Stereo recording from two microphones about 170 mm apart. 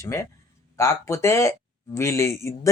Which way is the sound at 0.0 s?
20° left (ahead or behind).